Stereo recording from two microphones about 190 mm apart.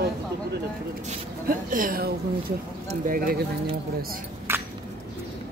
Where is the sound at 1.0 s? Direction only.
45° right (ahead or behind).